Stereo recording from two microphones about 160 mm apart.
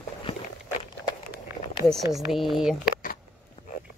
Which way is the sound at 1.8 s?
Centre (ahead or behind).